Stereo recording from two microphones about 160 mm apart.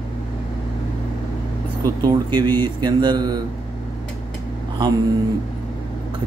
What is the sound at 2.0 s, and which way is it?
Speech, 25° right (ahead or behind).